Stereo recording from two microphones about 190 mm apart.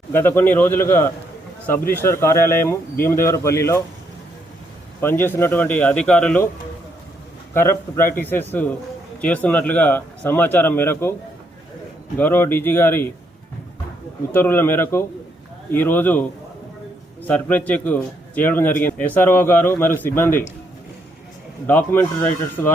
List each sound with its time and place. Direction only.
0.1 s a man's voice: 10° left (ahead or behind)
4.9 s a man's voice: 10° left (ahead or behind)
7.5 s a man's voice: 10° left (ahead or behind)
12.1 s a man's voice: 10° left (ahead or behind)
14.3 s a man's voice: 10° left (ahead or behind)
17.2 s a man's voice: 10° left (ahead or behind)
21.7 s a man's voice: 10° left (ahead or behind)